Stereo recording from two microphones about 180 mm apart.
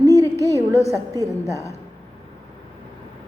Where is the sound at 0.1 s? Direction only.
15° left (ahead or behind).